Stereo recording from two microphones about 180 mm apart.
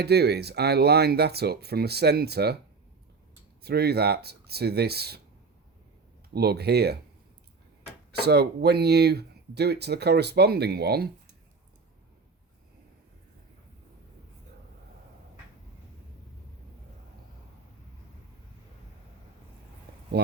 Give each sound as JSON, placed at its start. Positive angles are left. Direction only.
{"t": 0.0, "sound": "speech", "side_deg": -65}
{"t": 3.6, "sound": "speech", "side_deg": -60}
{"t": 6.3, "sound": "speech", "side_deg": -60}
{"t": 8.2, "sound": "speech", "side_deg": -65}
{"t": 20.2, "sound": "speech", "side_deg": -60}